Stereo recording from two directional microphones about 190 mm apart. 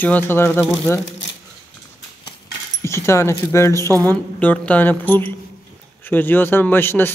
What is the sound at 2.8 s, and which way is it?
Dog, 15° left (ahead or behind).